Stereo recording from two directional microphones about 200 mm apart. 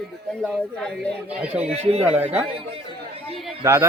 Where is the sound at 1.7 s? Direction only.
30° right (ahead or behind).